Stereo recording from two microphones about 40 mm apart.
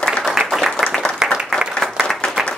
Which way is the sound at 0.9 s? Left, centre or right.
Centre.